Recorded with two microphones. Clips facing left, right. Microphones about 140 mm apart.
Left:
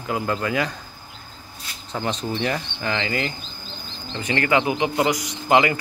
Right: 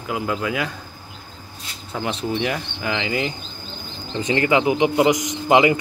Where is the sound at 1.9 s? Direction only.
5° right (ahead or behind).